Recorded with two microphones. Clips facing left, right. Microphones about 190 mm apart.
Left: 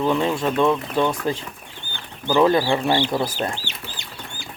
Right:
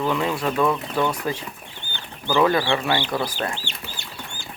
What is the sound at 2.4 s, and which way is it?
Speech, 25° left (ahead or behind).